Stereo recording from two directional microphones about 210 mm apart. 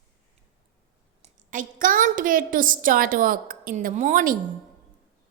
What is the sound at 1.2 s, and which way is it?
A woman's voice, 35° right (ahead or behind).